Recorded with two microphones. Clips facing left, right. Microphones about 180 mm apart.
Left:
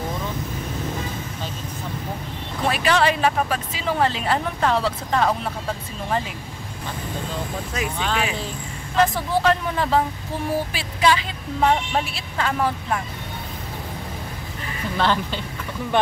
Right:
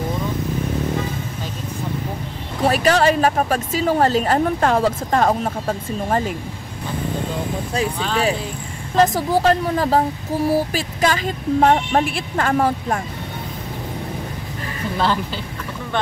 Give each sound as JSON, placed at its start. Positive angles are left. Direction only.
{"t": 2.6, "sound": "speech", "side_deg": -40}
{"t": 8.9, "sound": "speech", "side_deg": -40}
{"t": 15.0, "sound": "speech", "side_deg": -5}